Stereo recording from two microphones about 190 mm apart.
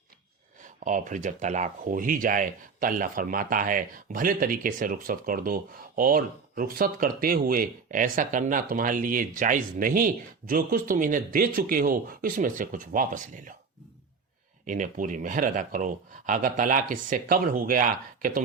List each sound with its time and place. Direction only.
0.6 s speech: 45° right (ahead or behind)
14.7 s speech: 45° right (ahead or behind)